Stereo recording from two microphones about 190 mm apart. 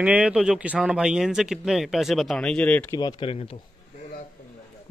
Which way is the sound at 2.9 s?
20° left (ahead or behind).